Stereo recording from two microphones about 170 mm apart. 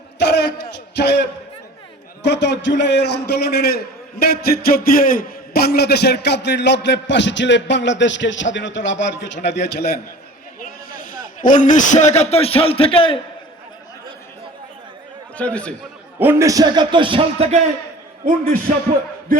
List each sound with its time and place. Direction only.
0.2 s a sound: 80° left
2.2 s a man's voice: 90° left; by 9.9 s 70° left (ahead or behind)
11.0 s a man's voice: 50° left (ahead or behind); by 13.1 s 30° left (ahead or behind)
15.4 s a man's voice: 5° left (ahead or behind)
16.1 s speech: 10° right (ahead or behind); by 17.6 s 35° right (ahead or behind)